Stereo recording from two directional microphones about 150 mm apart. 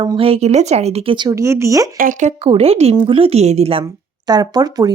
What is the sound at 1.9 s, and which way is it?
Speech, 60° right (ahead or behind).